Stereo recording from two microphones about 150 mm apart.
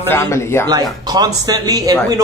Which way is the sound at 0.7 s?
25° right (ahead or behind).